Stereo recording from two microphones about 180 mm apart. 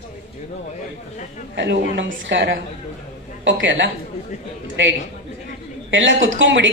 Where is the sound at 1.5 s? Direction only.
90° right.